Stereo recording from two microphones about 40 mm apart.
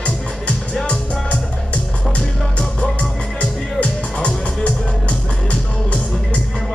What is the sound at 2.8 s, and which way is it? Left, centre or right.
Music, left.